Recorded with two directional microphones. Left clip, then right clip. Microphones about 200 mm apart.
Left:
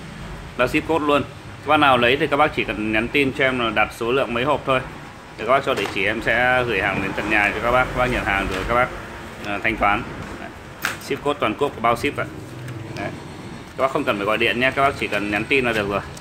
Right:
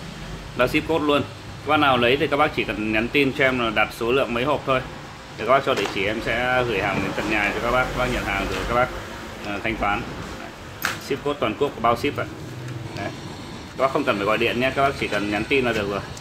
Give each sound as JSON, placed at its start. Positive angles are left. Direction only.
{"t": 0.6, "sound": "speech", "side_deg": 5}
{"t": 13.7, "sound": "speech", "side_deg": 15}